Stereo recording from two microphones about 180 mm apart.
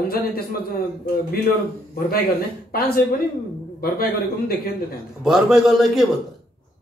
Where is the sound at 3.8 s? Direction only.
55° left (ahead or behind).